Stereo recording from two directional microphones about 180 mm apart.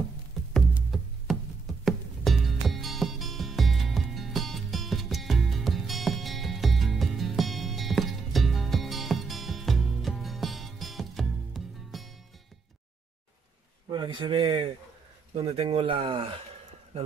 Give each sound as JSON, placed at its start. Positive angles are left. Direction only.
{"t": 0.5, "sound": "music", "side_deg": 0}
{"t": 13.8, "sound": "a sound", "side_deg": -25}
{"t": 15.3, "sound": "speech", "side_deg": -30}